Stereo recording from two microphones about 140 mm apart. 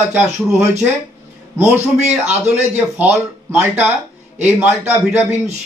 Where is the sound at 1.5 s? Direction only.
15° right (ahead or behind).